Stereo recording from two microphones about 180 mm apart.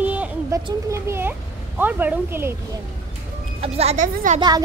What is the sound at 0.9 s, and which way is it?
A child's voice, 10° right (ahead or behind).